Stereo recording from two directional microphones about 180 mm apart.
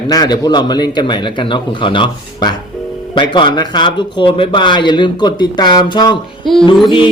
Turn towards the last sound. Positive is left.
turn(degrees=25)  # may be behind; listen again after turning